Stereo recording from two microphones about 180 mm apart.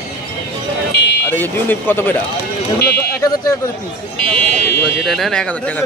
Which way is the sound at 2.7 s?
60° left (ahead or behind).